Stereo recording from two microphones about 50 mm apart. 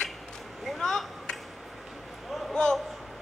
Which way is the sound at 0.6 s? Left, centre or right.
Centre.